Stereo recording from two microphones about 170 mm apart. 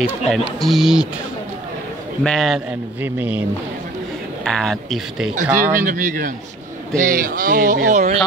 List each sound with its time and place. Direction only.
0.3 s speech: centre (ahead or behind)
2.2 s speech: centre (ahead or behind)
3.0 s speech: 10° right (ahead or behind)
4.5 s speech: 5° left (ahead or behind)
5.3 s speech: 50° right (ahead or behind)